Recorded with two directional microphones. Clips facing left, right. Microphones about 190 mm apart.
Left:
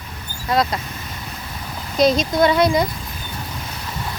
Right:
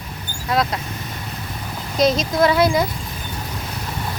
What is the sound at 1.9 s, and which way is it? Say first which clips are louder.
Speech: left 1 dB; centre (ahead or behind).